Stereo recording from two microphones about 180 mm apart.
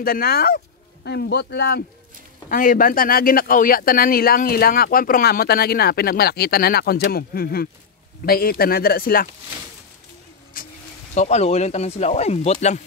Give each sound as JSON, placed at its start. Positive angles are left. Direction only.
{"t": 0.0, "sound": "speech", "side_deg": 55}
{"t": 2.5, "sound": "speech", "side_deg": 50}
{"t": 10.6, "sound": "a sound", "side_deg": 50}
{"t": 11.1, "sound": "speech", "side_deg": 40}